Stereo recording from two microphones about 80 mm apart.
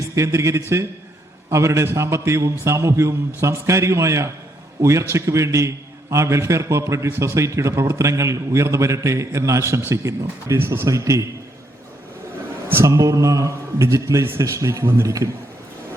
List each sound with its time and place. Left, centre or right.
0.2 s a man's voice: right
12.8 s a man's voice: right